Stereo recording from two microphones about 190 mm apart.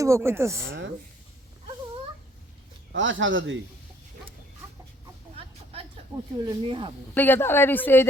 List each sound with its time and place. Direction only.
0.0 s speech: 15° right (ahead or behind)
2.9 s speech: 80° right
6.3 s speech: 25° right (ahead or behind)
7.1 s speech: 10° left (ahead or behind)